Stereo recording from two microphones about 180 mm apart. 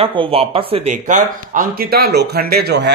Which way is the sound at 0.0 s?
30° right (ahead or behind).